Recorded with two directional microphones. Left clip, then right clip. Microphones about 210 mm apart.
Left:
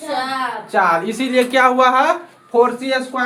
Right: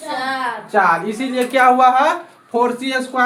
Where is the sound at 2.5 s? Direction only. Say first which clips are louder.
Left 3 dB; 5° left (ahead or behind).